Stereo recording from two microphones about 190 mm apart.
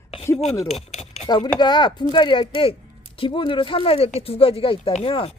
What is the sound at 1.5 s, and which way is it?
Speech, 25° left (ahead or behind).